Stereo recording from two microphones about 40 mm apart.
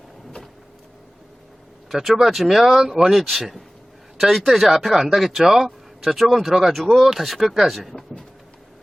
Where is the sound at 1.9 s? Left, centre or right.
Centre.